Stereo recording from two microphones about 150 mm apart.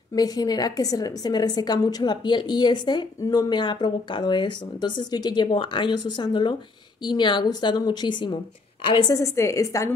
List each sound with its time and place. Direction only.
0.1 s a woman's voice: 25° left (ahead or behind)